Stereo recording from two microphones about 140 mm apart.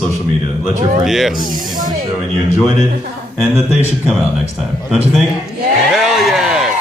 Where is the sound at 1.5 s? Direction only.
70° right (ahead or behind).